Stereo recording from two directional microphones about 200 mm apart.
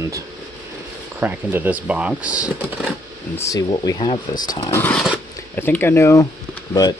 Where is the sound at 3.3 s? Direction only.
15° left (ahead or behind).